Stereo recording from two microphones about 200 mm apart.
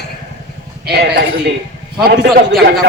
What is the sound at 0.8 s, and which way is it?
A man's voice, 55° right (ahead or behind).